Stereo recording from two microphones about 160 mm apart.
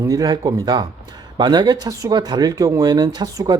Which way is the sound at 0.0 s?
20° right (ahead or behind).